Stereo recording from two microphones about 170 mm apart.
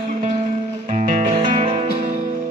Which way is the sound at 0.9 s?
45° right (ahead or behind).